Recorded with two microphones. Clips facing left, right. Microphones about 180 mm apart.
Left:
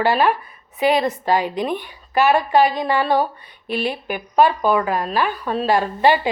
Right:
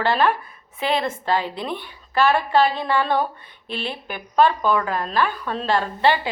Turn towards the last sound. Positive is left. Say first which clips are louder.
# left 3 dB
turn(degrees=10)  # may be behind; listen again after turning